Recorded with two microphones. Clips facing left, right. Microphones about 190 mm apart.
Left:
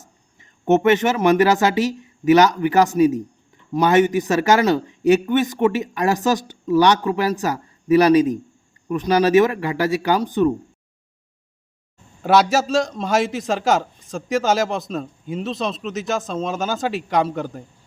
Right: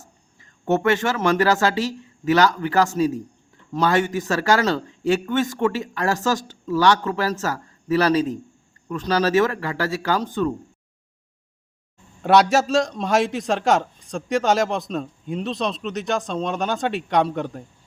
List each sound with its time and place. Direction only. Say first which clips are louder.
0.0 s speech: even; 20° left (ahead or behind)
12.2 s a man's voice: even; centre (ahead or behind)